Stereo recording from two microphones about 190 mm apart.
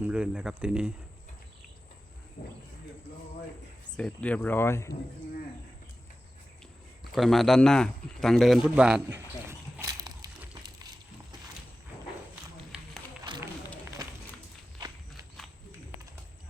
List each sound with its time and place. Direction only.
0.0 s speech: 5° right (ahead or behind)
2.4 s speech: 55° left (ahead or behind)
3.9 s speech: 5° left (ahead or behind)
7.1 s speech: centre (ahead or behind); by 10.2 s 20° right (ahead or behind)
10.5 s a sound: 20° right (ahead or behind)
13.2 s run: 25° right (ahead or behind)